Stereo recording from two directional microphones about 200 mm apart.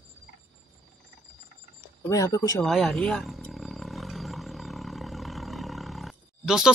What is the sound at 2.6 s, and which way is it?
Roaring cats, centre (ahead or behind).